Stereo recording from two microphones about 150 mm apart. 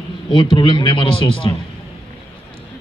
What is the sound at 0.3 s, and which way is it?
A man's voice, 35° left (ahead or behind).